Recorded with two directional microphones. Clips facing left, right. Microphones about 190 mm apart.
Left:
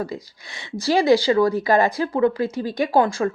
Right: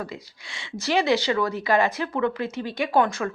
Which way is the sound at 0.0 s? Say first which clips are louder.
Left 6 dB; 40° left (ahead or behind).